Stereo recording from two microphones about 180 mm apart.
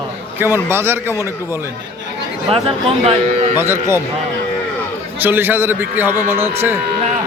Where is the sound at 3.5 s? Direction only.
15° right (ahead or behind).